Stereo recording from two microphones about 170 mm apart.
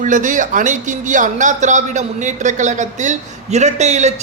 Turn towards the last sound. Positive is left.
turn(degrees=-40)  # may be behind; listen again after turning